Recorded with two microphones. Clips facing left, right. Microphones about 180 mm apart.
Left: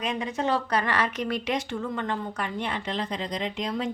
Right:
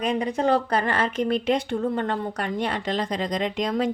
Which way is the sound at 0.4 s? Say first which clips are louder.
Right 3 dB; 50° right (ahead or behind).